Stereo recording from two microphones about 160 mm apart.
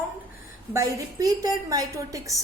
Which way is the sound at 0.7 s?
20° right (ahead or behind).